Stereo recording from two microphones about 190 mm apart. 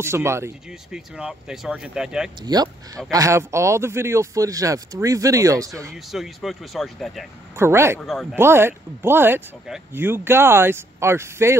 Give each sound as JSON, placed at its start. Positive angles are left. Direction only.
{"t": 0.0, "sound": "speech", "side_deg": -15}
{"t": 2.4, "sound": "speech", "side_deg": -20}
{"t": 6.1, "sound": "speech", "side_deg": 0}
{"t": 7.5, "sound": "speech", "side_deg": -15}
{"t": 8.0, "sound": "speech", "side_deg": 0}
{"t": 8.4, "sound": "speech", "side_deg": -10}